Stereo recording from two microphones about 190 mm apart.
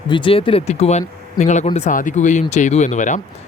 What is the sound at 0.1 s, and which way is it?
Speech, 25° left (ahead or behind).